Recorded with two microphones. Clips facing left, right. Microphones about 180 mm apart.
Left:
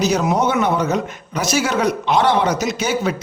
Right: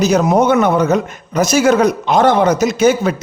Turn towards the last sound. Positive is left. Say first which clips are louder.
# right 7 dB
turn(degrees=-50)  # may be behind; listen again after turning